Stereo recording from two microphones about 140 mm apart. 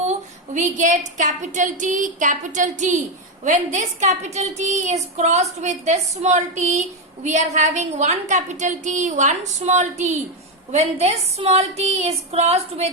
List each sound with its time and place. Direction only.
0.0 s a woman's voice: 55° right (ahead or behind)
10.7 s female singing: 50° right (ahead or behind)